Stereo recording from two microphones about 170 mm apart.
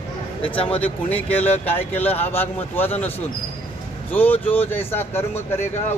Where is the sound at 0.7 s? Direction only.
10° left (ahead or behind).